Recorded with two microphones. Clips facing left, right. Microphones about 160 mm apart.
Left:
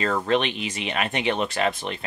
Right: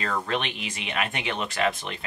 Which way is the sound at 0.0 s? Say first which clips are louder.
Left 6 dB; 35° left (ahead or behind).